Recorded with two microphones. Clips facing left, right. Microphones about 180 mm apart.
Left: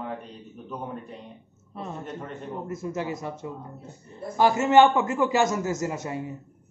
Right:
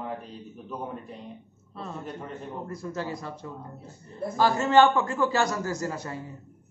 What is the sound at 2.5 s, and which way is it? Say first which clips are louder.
A man's voice: left 5 dB; 20° left (ahead or behind).